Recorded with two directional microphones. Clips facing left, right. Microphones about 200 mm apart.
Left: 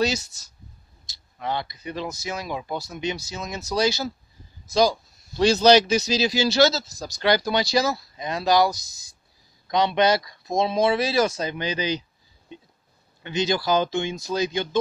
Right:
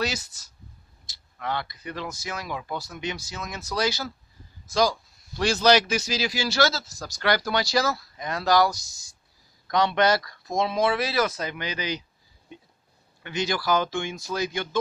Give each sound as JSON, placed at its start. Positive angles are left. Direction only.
{"t": 1.4, "sound": "speech", "side_deg": 20}
{"t": 5.4, "sound": "speech", "side_deg": 20}
{"t": 13.2, "sound": "speech", "side_deg": 20}